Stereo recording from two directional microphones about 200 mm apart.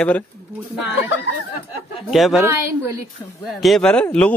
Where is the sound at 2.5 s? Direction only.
15° right (ahead or behind).